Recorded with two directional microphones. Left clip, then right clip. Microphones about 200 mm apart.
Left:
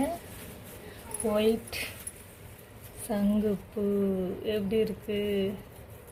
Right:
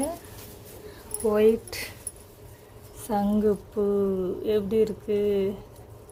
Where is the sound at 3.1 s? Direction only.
20° right (ahead or behind).